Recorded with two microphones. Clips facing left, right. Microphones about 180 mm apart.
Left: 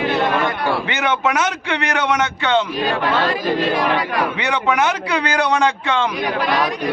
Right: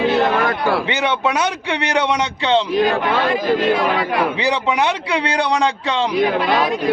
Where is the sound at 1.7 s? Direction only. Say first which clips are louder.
Right 1 dB; 25° right (ahead or behind).